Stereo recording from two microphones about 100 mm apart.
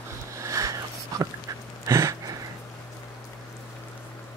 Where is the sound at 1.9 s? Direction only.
35° right (ahead or behind).